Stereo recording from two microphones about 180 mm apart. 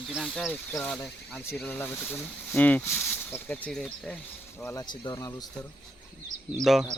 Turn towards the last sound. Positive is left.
turn(degrees=0)  # may be behind; listen again after turning